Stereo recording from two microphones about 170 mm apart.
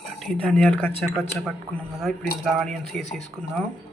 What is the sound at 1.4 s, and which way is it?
Speech, centre (ahead or behind).